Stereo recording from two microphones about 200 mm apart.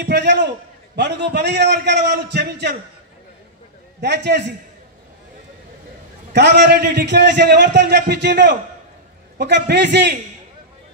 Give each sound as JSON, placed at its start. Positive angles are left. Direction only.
{"t": 0.0, "sound": "a sound", "side_deg": -60}
{"t": 0.9, "sound": "a man's voice", "side_deg": -55}
{"t": 4.0, "sound": "a man's voice", "side_deg": -60}
{"t": 6.3, "sound": "a man's voice", "side_deg": -60}